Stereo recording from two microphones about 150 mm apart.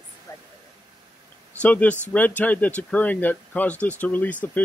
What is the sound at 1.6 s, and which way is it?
Speech, 10° left (ahead or behind).